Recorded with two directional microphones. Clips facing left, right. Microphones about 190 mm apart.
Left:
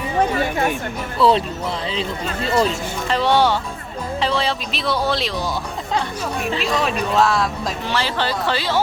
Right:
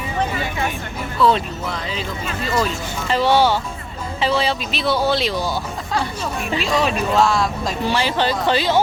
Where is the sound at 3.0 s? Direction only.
5° right (ahead or behind).